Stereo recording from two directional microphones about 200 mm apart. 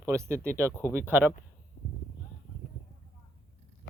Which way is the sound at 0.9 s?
10° right (ahead or behind).